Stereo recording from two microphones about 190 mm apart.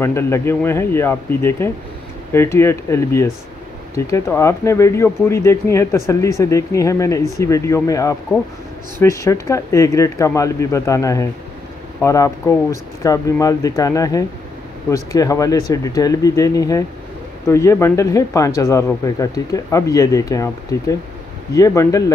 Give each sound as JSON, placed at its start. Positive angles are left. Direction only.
{"t": 0.0, "sound": "speech", "side_deg": 15}